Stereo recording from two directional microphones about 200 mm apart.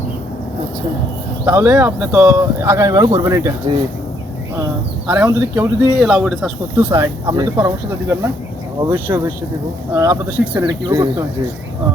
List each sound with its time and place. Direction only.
1.5 s speech: 10° right (ahead or behind)
5.0 s speech: 10° right (ahead or behind)
10.7 s speech: 20° right (ahead or behind)